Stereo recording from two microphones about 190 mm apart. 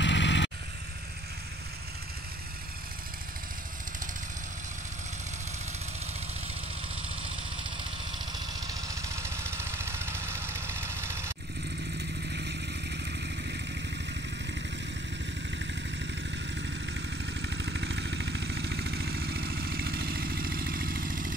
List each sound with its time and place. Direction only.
0.0 s vehicle: 70° left (ahead or behind)
8.5 s vehicle: 20° right (ahead or behind)
12.0 s vehicle: 60° right (ahead or behind)
16.5 s vehicle: 65° right (ahead or behind); by 21.4 s 45° right (ahead or behind)